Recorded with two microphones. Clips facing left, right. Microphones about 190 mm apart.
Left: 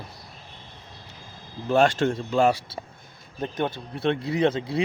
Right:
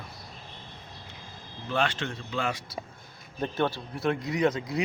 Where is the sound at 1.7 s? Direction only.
45° left (ahead or behind).